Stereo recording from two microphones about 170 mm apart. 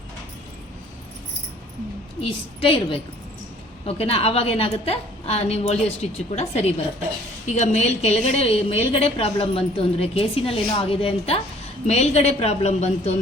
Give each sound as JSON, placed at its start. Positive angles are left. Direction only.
{"t": 2.2, "sound": "a woman's voice", "side_deg": 30}